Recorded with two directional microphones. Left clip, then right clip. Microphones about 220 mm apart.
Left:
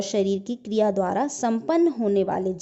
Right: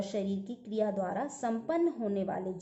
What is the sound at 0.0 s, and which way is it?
A woman's voice, 45° left (ahead or behind).